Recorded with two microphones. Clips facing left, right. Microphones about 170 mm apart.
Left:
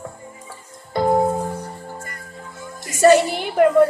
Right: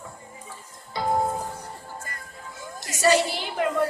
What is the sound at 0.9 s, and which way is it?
Music, 50° left (ahead or behind).